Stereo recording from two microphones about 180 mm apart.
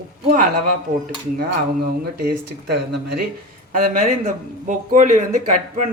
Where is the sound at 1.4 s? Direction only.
60° right (ahead or behind).